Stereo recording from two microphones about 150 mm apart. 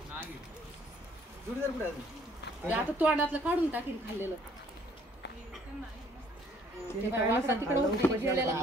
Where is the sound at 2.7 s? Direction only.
10° right (ahead or behind).